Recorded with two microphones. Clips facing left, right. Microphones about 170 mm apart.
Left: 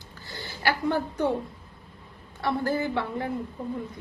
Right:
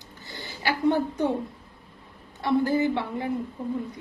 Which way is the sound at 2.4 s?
15° right (ahead or behind).